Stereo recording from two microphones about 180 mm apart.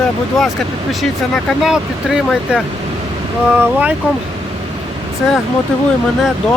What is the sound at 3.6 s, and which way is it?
Speech, 10° right (ahead or behind).